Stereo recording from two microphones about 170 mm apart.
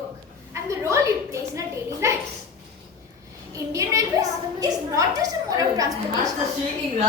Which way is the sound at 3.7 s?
20° right (ahead or behind).